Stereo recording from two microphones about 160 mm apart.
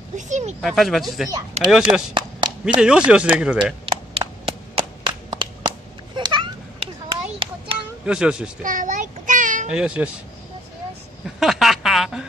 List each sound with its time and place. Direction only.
0.3 s speech: 45° right (ahead or behind)
0.6 s speech: centre (ahead or behind)
3.8 s a sound: 35° right (ahead or behind)
8.0 s speech: 5° right (ahead or behind)
8.6 s a child's voice: 55° right (ahead or behind)
9.7 s speech: 5° right (ahead or behind)
11.3 s a sound: centre (ahead or behind)